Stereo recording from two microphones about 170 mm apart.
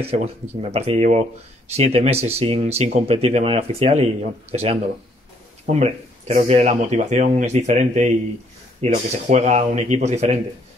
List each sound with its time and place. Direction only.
0.0 s speech: 35° right (ahead or behind)